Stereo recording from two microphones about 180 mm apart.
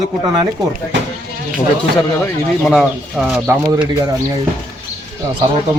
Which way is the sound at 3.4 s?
15° right (ahead or behind).